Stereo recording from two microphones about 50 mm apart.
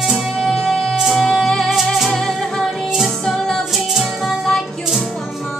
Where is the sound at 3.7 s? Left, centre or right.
Centre.